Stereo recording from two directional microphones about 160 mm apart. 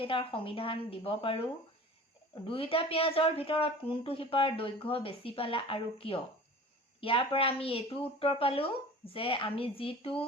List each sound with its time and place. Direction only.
0.0 s speech: 35° left (ahead or behind)